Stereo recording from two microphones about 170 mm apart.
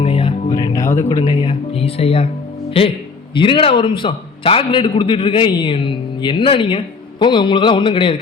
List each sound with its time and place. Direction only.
0.0 s music: 35° left (ahead or behind)
0.5 s music: 20° left (ahead or behind)
1.3 s a man's voice: 30° left (ahead or behind)